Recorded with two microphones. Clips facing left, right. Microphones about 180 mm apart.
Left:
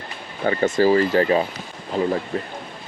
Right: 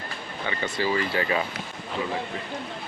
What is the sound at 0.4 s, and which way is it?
Speech, 45° left (ahead or behind).